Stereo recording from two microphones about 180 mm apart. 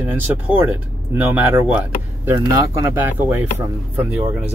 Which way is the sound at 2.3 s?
20° right (ahead or behind).